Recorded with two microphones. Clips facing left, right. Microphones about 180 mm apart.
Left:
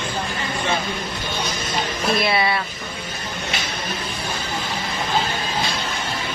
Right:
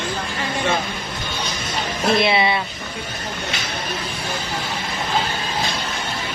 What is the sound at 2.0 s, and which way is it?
Speech, 25° right (ahead or behind).